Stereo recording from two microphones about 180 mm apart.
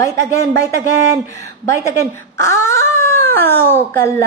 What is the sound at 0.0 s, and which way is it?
Speech, 15° left (ahead or behind).